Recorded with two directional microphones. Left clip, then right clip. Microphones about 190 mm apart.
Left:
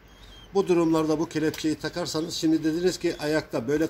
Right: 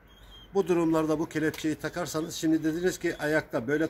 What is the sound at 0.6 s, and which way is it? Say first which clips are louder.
Speech: left 3 dB; 5° right (ahead or behind).